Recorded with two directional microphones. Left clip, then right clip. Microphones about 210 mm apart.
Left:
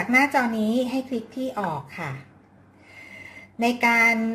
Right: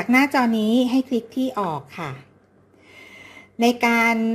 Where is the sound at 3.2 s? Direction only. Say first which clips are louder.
Right 4 dB; 40° right (ahead or behind).